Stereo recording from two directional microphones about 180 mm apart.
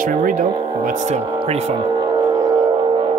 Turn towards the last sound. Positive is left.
turn(degrees=-25)  # may be behind; listen again after turning